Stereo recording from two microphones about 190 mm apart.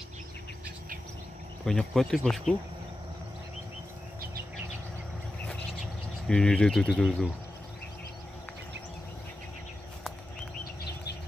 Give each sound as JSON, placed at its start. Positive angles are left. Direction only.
{"t": 1.7, "sound": "speech", "side_deg": 0}
{"t": 5.5, "sound": "insect", "side_deg": 5}
{"t": 10.6, "sound": "a sound", "side_deg": 60}